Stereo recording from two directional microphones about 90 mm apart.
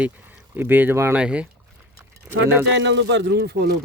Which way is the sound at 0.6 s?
20° right (ahead or behind).